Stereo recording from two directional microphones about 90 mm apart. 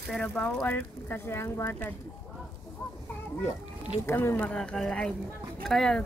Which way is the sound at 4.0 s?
25° left (ahead or behind).